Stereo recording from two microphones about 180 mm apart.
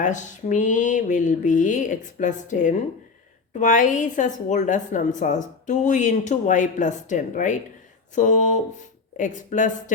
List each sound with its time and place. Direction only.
0.0 s a woman's voice: 45° left (ahead or behind)